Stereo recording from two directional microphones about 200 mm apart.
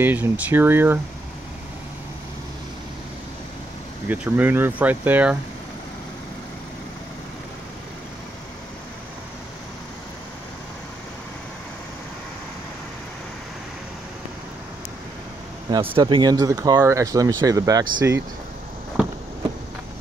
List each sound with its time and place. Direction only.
0.0 s speech: 10° right (ahead or behind)
4.1 s speech: 10° right (ahead or behind)
15.7 s speech: 25° right (ahead or behind)